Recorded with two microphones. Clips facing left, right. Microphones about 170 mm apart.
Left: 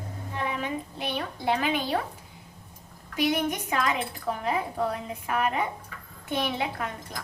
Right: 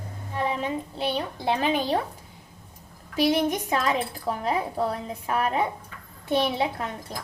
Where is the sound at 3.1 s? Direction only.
35° right (ahead or behind).